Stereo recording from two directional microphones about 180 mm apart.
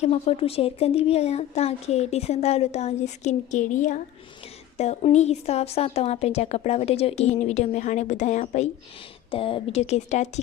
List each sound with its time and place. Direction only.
0.0 s speech: 35° left (ahead or behind)
9.3 s speech: 30° left (ahead or behind)